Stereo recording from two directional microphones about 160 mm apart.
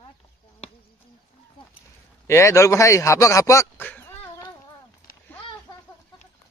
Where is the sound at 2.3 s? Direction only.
20° left (ahead or behind).